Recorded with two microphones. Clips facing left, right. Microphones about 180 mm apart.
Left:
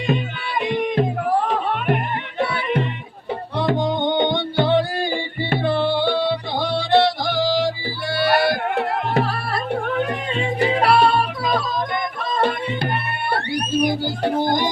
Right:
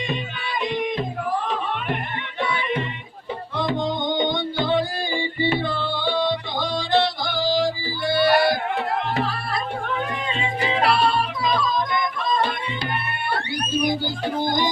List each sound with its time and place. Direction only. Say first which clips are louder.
0.6 s music: left 5 dB; 65° left (ahead or behind)
2.4 s music: left 3 dB; 45° left (ahead or behind)
3.7 s music: left 4 dB; 65° left (ahead or behind)